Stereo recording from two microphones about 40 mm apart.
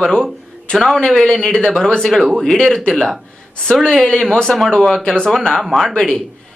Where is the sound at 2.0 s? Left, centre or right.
Centre.